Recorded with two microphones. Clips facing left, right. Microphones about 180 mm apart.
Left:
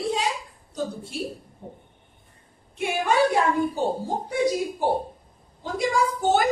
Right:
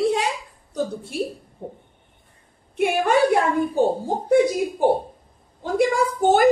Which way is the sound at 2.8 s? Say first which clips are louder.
Right 5 dB; 55° right (ahead or behind).